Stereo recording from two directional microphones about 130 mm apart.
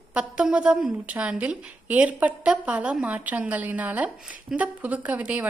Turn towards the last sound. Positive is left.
turn(degrees=-10)  # may be behind; listen again after turning